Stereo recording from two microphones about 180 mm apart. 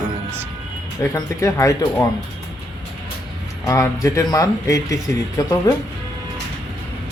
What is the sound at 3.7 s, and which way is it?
Speech, 15° left (ahead or behind).